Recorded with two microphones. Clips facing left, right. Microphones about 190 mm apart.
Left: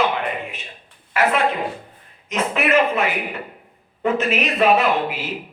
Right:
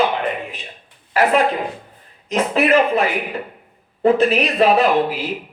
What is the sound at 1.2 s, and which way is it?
Speech, 35° right (ahead or behind).